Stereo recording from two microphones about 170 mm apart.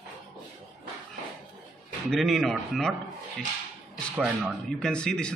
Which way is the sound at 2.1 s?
Centre (ahead or behind).